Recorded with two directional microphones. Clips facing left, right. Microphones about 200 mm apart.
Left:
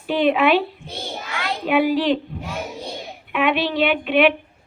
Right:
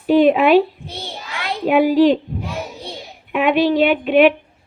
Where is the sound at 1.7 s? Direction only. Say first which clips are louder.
Right 5 dB; 40° right (ahead or behind).